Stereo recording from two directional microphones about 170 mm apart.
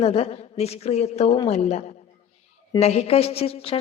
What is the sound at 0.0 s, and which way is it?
A woman's voice, 35° left (ahead or behind).